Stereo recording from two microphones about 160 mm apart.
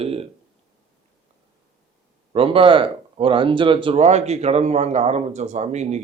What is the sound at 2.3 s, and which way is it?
Speech, 35° right (ahead or behind).